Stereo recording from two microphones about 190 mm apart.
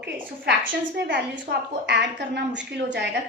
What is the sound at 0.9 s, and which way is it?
A woman's voice, 65° right (ahead or behind).